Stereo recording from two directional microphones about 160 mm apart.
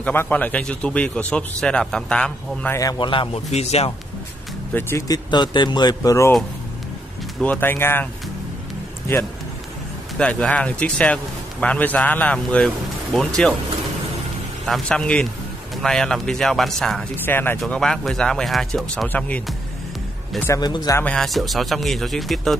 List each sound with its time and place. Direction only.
0.0 s a man's voice: 10° left (ahead or behind)
2.8 s speech: 25° left (ahead or behind)
3.4 s speech: 45° left (ahead or behind)
4.7 s speech: 15° left (ahead or behind)
7.4 s a man's voice: 10° left (ahead or behind)
10.1 s a man's voice: 5° left (ahead or behind)
14.7 s a man's voice: 5° left (ahead or behind)
20.4 s speech: 25° left (ahead or behind)
21.0 s speech: 5° left (ahead or behind)